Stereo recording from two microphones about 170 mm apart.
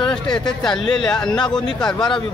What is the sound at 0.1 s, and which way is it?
Speech, 5° left (ahead or behind).